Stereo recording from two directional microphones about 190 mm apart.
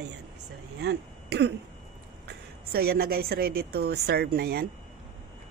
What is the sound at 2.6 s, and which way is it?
Speech, 55° right (ahead or behind).